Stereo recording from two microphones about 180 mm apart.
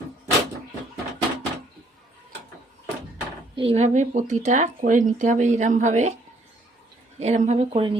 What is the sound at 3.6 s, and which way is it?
Speech, 35° right (ahead or behind).